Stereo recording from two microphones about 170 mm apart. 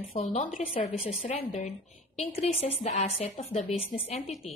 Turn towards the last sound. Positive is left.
turn(degrees=40)  # may be behind; listen again after turning